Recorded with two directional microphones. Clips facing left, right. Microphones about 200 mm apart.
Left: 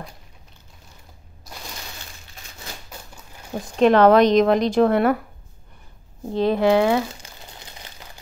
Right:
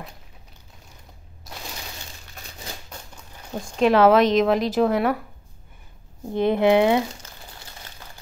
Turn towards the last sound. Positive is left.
turn(degrees=20)  # may be behind; listen again after turning